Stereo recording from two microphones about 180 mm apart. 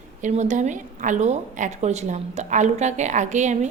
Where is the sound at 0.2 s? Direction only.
40° right (ahead or behind).